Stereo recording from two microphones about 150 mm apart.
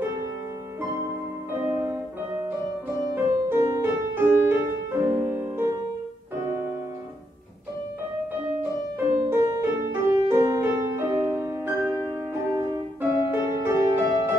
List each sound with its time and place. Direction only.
1.6 s music: 10° right (ahead or behind)
8.3 s music: 15° right (ahead or behind)